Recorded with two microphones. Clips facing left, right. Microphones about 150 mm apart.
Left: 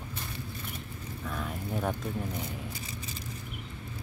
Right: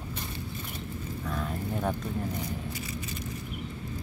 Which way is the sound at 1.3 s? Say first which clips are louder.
Right 2 dB; centre (ahead or behind).